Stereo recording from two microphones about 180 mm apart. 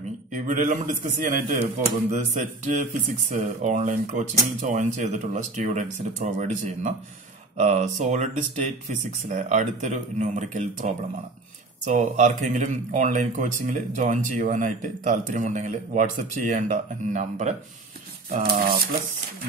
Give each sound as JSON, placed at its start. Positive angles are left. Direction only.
{"t": 0.3, "sound": "speech", "side_deg": -45}